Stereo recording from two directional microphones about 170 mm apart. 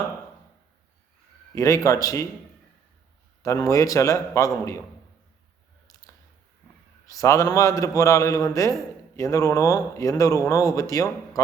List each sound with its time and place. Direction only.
1.5 s a man's voice: 20° left (ahead or behind)
3.4 s a man's voice: 20° left (ahead or behind)
7.1 s a man's voice: 20° left (ahead or behind)